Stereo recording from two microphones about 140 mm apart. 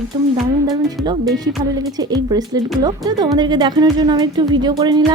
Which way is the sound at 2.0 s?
25° right (ahead or behind).